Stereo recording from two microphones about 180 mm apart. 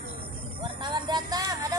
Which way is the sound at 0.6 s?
25° right (ahead or behind).